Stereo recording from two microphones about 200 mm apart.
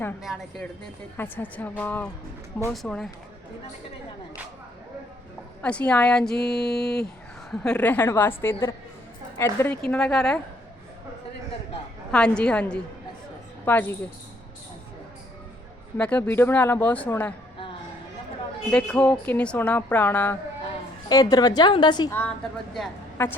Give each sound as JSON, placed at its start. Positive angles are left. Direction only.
{"t": 0.2, "sound": "speech", "side_deg": 0}
{"t": 5.6, "sound": "speech", "side_deg": 5}
{"t": 12.1, "sound": "speech", "side_deg": 5}
{"t": 16.0, "sound": "speech", "side_deg": 5}
{"t": 18.7, "sound": "a woman's voice", "side_deg": 5}
{"t": 22.1, "sound": "speech", "side_deg": 5}